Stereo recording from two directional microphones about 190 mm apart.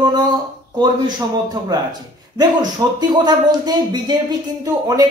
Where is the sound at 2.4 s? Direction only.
20° right (ahead or behind).